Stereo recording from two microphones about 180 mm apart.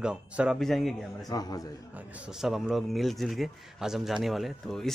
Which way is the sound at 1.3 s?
20° left (ahead or behind).